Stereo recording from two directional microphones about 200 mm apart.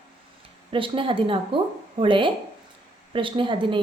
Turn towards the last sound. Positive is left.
turn(degrees=-25)  # may be behind; listen again after turning